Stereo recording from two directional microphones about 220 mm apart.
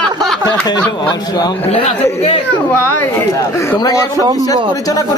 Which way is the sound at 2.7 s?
10° left (ahead or behind).